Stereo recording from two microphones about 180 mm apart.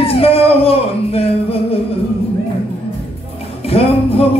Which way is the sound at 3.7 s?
35° left (ahead or behind).